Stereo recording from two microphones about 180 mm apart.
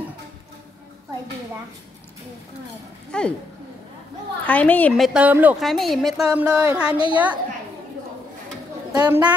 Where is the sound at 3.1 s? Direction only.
5° left (ahead or behind).